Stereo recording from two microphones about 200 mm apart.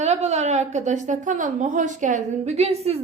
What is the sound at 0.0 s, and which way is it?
A woman's voice, 35° right (ahead or behind).